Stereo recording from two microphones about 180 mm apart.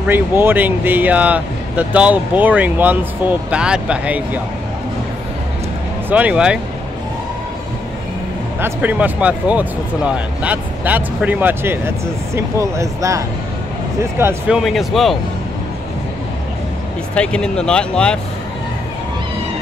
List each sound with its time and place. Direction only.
0.0 s speech: 10° right (ahead or behind)
6.0 s speech: 10° right (ahead or behind)
8.5 s speech: 10° right (ahead or behind)
14.6 s speech: centre (ahead or behind)
17.1 s speech: 5° left (ahead or behind)